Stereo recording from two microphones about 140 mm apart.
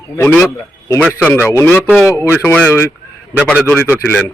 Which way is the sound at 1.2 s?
15° left (ahead or behind).